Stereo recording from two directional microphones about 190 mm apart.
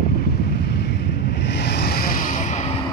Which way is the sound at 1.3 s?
65° left (ahead or behind).